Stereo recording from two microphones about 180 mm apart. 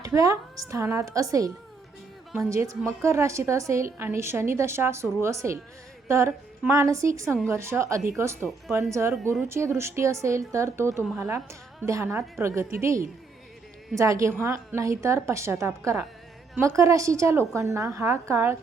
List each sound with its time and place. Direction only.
0.0 s a woman's voice: 20° right (ahead or behind)
8.4 s speech: centre (ahead or behind)
8.9 s a woman's voice: 15° right (ahead or behind)